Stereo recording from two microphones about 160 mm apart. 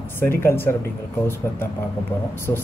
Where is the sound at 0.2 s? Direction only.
15° left (ahead or behind).